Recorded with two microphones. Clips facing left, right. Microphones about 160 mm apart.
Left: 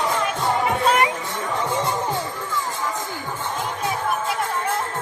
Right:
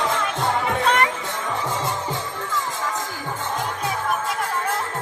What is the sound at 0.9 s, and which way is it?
Music, 10° left (ahead or behind).